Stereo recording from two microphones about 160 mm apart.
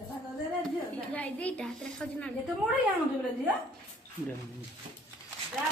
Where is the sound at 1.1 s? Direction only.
10° left (ahead or behind).